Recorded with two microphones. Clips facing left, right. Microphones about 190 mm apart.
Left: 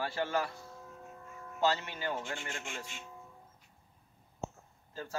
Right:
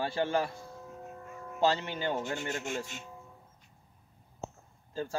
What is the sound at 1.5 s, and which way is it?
Speech, 30° right (ahead or behind).